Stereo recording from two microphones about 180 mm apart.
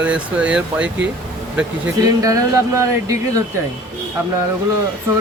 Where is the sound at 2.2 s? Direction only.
15° right (ahead or behind).